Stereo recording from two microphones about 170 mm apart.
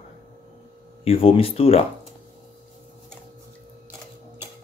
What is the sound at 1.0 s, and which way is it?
Speech, 35° left (ahead or behind).